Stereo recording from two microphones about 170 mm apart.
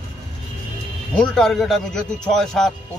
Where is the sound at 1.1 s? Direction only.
5° left (ahead or behind).